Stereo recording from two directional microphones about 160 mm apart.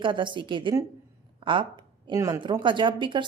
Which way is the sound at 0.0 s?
30° right (ahead or behind).